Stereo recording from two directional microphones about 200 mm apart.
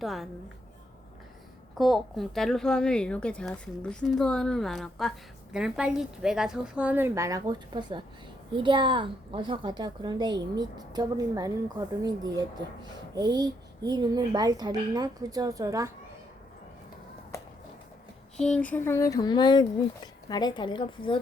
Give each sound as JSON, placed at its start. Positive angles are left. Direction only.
{"t": 0.0, "sound": "speech", "side_deg": 0}
{"t": 1.8, "sound": "a child's voice", "side_deg": 0}
{"t": 18.3, "sound": "a woman's voice", "side_deg": 5}